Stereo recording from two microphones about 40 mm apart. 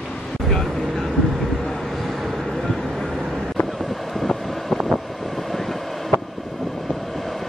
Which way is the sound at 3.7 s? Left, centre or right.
Centre.